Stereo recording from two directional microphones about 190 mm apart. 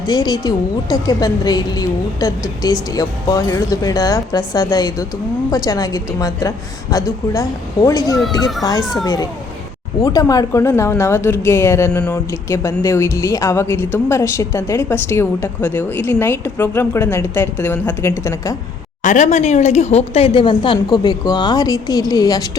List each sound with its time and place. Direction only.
0.0 s a woman's voice: 20° left (ahead or behind)
8.8 s a child's voice: centre (ahead or behind)
9.0 s a woman's voice: 20° left (ahead or behind)
19.0 s a woman's voice: 40° left (ahead or behind); by 22.4 s 20° left (ahead or behind)